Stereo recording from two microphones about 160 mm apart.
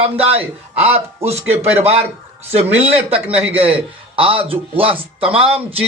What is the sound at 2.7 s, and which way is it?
Speech, 40° right (ahead or behind).